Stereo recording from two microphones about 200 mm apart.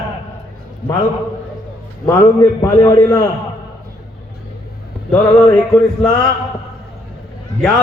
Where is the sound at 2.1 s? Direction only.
15° left (ahead or behind).